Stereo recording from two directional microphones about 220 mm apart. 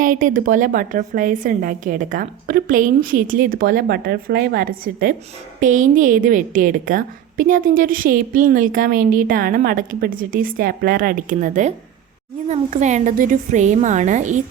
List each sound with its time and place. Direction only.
0.0 s a woman's voice: 35° right (ahead or behind)